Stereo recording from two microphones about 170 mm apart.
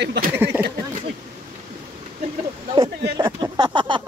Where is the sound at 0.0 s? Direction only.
75° right (ahead or behind).